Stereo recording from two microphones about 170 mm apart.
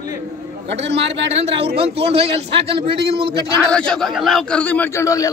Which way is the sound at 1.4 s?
35° right (ahead or behind).